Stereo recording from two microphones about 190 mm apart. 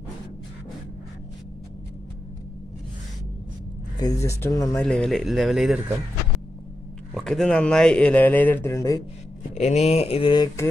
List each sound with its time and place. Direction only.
4.0 s speech: 15° left (ahead or behind)
4.8 s speech: 5° left (ahead or behind)
7.2 s speech: 5° left (ahead or behind)
9.6 s speech: 35° left (ahead or behind); by 10.7 s 20° left (ahead or behind)